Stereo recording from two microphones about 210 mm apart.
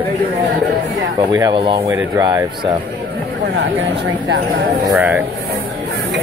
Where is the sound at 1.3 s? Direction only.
20° right (ahead or behind).